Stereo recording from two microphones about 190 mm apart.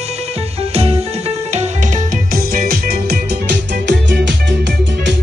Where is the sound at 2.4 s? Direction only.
55° right (ahead or behind).